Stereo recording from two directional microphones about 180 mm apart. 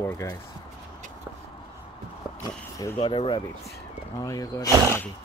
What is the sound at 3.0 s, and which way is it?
Speech, 25° left (ahead or behind).